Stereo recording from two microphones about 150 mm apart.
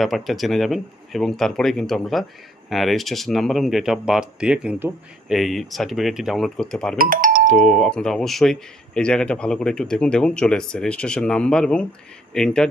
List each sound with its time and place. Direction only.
0.0 s speech: centre (ahead or behind)
5.3 s speech: centre (ahead or behind)
7.0 s speech: 65° right (ahead or behind)
7.5 s speech: 5° left (ahead or behind)